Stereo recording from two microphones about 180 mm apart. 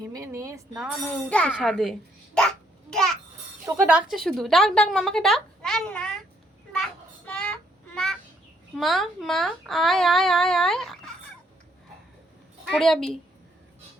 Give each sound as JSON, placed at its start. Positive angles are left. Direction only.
{"t": 0.1, "sound": "speech", "side_deg": -20}
{"t": 1.3, "sound": "a woman's voice", "side_deg": 5}
{"t": 2.9, "sound": "a sound", "side_deg": 5}
{"t": 3.7, "sound": "a woman's voice", "side_deg": -10}
{"t": 7.3, "sound": "child singing", "side_deg": 5}
{"t": 8.7, "sound": "a woman's voice", "side_deg": 0}
{"t": 12.7, "sound": "a woman's voice", "side_deg": 0}